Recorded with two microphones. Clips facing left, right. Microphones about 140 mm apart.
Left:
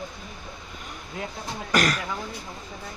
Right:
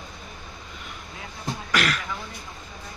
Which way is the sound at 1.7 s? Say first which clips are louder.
Left 3 dB; 40° left (ahead or behind).